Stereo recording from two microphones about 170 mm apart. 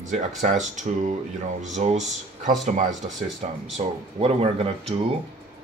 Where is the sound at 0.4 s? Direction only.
45° right (ahead or behind).